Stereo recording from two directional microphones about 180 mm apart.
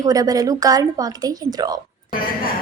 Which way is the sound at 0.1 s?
20° right (ahead or behind).